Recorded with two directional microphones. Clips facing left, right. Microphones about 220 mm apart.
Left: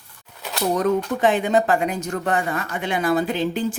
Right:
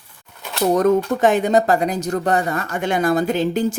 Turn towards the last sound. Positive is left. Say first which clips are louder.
# right 4 dB
turn(degrees=-45)  # may be behind; listen again after turning